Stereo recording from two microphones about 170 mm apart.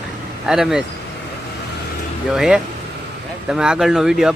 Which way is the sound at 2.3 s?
5° right (ahead or behind).